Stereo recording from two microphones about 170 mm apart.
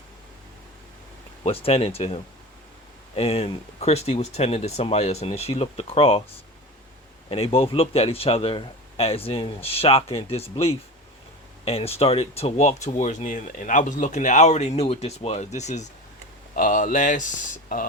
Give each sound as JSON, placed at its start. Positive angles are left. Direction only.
{"t": 1.5, "sound": "speech", "side_deg": 35}
{"t": 3.2, "sound": "speech", "side_deg": 35}
{"t": 7.3, "sound": "speech", "side_deg": 35}